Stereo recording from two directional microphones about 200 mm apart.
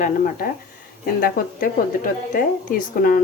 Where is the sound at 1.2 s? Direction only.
45° left (ahead or behind).